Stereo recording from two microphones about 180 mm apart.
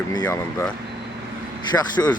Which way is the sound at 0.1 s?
20° left (ahead or behind).